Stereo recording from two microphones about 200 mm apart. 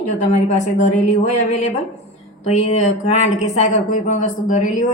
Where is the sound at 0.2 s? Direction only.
35° left (ahead or behind).